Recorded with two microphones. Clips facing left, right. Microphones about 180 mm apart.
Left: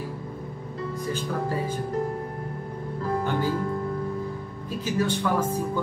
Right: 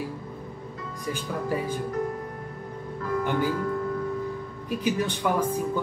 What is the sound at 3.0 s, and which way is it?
Music, 30° left (ahead or behind).